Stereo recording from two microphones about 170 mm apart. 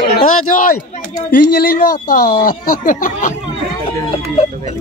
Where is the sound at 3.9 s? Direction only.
35° left (ahead or behind).